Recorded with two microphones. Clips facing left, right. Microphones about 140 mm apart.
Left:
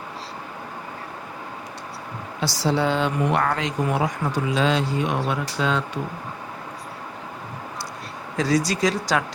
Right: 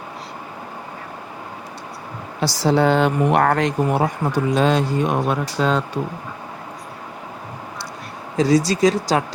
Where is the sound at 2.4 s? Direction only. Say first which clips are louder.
Right 5 dB; 50° right (ahead or behind).